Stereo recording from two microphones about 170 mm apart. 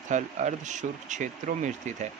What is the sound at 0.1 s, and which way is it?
Speech, 45° right (ahead or behind).